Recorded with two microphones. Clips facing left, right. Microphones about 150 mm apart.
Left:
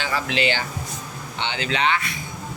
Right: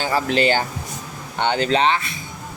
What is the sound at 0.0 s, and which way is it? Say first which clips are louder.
Speech: right 5 dB; 40° right (ahead or behind).